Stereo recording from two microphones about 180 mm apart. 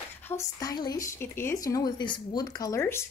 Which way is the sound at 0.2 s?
15° left (ahead or behind).